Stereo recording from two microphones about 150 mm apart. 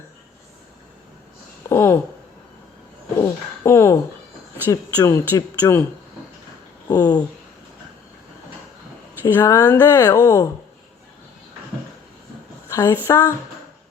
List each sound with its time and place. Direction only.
1.7 s speech: 15° left (ahead or behind)
3.2 s a sound: 20° left (ahead or behind)
4.7 s speech: 20° left (ahead or behind)
6.8 s speech: 25° left (ahead or behind)
9.2 s speech: 15° left (ahead or behind)
12.6 s a woman's voice: 20° left (ahead or behind)